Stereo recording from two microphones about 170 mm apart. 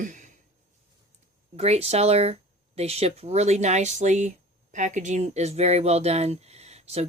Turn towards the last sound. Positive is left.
turn(degrees=-40)  # may be behind; listen again after turning